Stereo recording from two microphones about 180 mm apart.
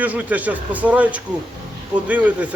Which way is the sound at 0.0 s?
10° right (ahead or behind).